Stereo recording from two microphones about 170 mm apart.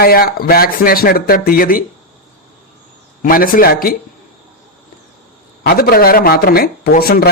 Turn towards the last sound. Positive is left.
turn(degrees=60)  # may be behind; listen again after turning